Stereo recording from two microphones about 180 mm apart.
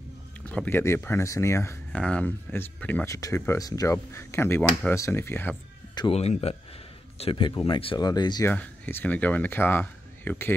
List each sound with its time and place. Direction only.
0.5 s speech: 10° left (ahead or behind)
5.9 s speech: 30° left (ahead or behind)
8.5 s speech: 10° left (ahead or behind)